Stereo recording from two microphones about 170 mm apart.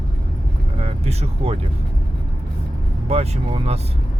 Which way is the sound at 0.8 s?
40° right (ahead or behind).